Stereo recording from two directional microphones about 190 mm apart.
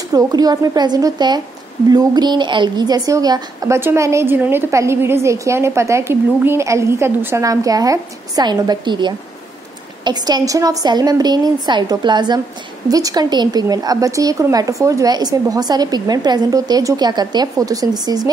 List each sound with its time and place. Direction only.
0.1 s a woman's voice: 20° right (ahead or behind)